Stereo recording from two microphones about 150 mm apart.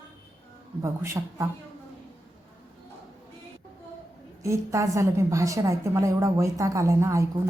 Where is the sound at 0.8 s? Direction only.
20° right (ahead or behind).